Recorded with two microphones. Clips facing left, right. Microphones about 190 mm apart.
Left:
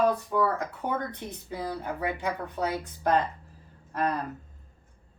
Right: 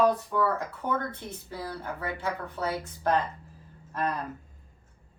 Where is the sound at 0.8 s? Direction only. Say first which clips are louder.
Right 1 dB; 15° left (ahead or behind).